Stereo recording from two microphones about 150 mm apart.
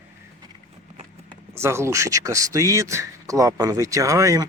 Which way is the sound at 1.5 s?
15° right (ahead or behind).